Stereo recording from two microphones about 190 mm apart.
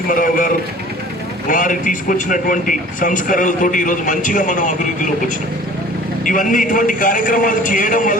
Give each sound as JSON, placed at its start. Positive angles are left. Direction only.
{"t": 0.1, "sound": "a man's voice", "side_deg": 45}
{"t": 6.2, "sound": "a man's voice", "side_deg": 45}